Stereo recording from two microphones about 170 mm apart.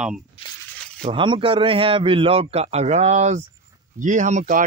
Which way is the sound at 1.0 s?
30° right (ahead or behind).